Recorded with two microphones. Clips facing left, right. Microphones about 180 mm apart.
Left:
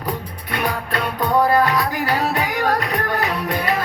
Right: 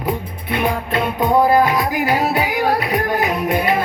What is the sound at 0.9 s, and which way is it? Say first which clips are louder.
Music: right 3 dB; 10° right (ahead or behind).